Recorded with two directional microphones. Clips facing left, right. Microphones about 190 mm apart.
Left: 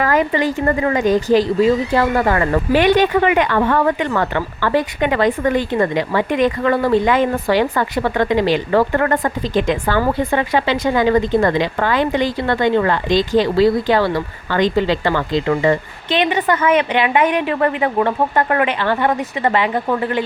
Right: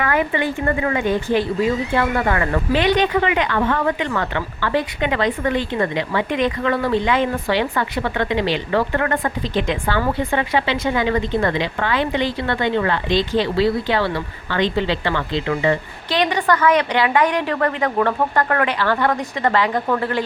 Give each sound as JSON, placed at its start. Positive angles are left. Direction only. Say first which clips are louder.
{"t": 0.0, "sound": "speech", "louder": "left 4 dB", "side_deg": 40}
{"t": 2.7, "sound": "speech", "louder": "left 4 dB", "side_deg": 50}
{"t": 16.0, "sound": "a woman's voice", "louder": "left 2 dB", "side_deg": 20}